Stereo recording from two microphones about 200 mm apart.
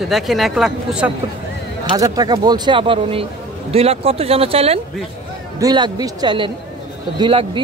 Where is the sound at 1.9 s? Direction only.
20° right (ahead or behind).